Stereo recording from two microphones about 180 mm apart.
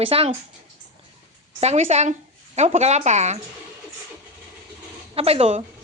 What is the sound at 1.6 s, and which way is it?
Speech, 35° right (ahead or behind).